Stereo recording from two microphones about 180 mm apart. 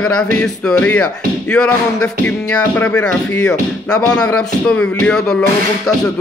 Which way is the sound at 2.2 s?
5° left (ahead or behind).